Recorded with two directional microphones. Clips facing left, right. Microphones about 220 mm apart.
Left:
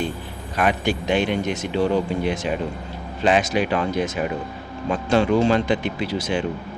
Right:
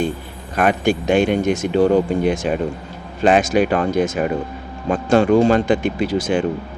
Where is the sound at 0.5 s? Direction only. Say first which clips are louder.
Right 4 dB; 50° right (ahead or behind).